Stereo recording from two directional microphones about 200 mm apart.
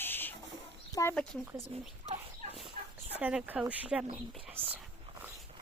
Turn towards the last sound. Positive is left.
turn(degrees=-10)  # may be behind; listen again after turning